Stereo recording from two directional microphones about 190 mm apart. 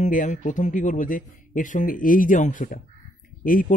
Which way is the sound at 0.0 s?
40° left (ahead or behind).